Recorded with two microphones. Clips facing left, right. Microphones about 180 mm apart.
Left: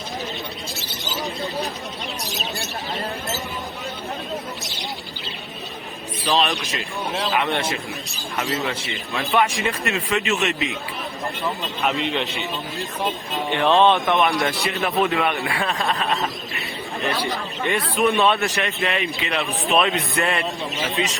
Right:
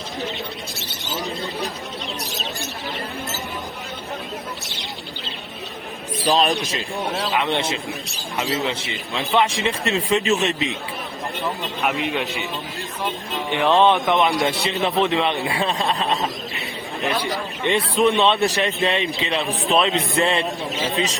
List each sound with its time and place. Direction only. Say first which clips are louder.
6.2 s speech: right 2 dB; 40° right (ahead or behind)
7.3 s speech: right 1 dB; 20° right (ahead or behind)
9.1 s speech: right 1 dB; 20° right (ahead or behind)
11.8 s a man's voice: even; 5° right (ahead or behind)
13.5 s a man's voice: even; 15° right (ahead or behind)
16.2 s bird: right 1 dB; 15° right (ahead or behind)
17.7 s speech: right 2 dB; 25° right (ahead or behind)